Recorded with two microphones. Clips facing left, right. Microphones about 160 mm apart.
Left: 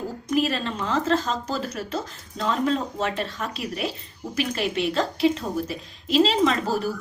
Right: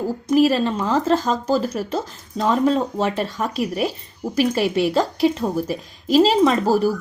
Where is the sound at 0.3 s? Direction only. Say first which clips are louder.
Right 8 dB; 40° right (ahead or behind).